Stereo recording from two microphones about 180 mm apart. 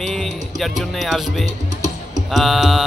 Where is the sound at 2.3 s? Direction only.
Centre (ahead or behind).